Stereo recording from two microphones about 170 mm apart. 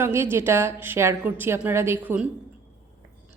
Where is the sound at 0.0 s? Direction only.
15° right (ahead or behind).